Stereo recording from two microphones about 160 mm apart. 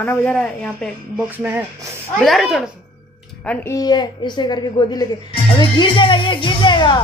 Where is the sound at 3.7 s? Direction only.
25° left (ahead or behind).